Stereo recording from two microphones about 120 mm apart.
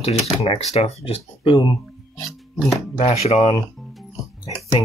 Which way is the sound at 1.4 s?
45° left (ahead or behind).